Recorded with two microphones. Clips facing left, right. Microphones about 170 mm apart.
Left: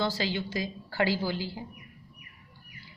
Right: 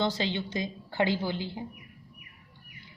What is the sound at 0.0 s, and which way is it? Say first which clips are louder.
A woman's voice: right 1 dB; 20° right (ahead or behind).